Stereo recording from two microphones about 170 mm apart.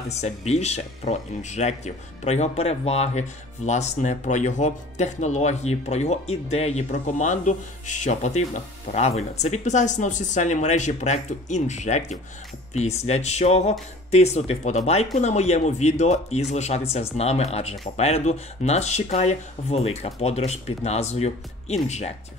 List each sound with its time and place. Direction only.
0.1 s speech: 40° left (ahead or behind)